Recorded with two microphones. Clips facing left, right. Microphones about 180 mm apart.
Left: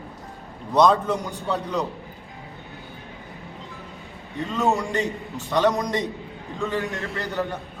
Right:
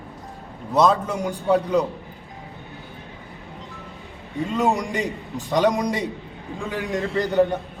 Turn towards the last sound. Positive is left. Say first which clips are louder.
# right 8 dB
turn(degrees=-15)  # may be behind; listen again after turning